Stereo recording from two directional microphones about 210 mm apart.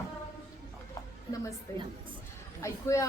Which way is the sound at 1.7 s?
15° left (ahead or behind).